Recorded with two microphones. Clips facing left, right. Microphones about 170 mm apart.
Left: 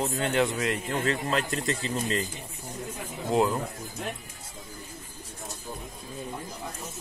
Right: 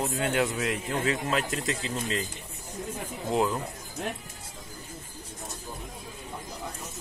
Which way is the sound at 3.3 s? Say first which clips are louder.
Left 2 dB; centre (ahead or behind).